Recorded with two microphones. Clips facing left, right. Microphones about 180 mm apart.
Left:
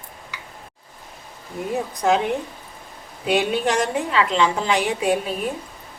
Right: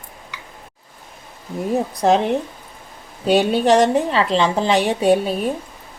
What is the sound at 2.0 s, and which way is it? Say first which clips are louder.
A woman's voice: right 3 dB; 35° right (ahead or behind).